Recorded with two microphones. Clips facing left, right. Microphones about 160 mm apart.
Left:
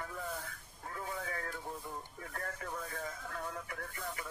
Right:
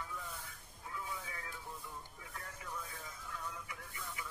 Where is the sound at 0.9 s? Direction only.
50° left (ahead or behind).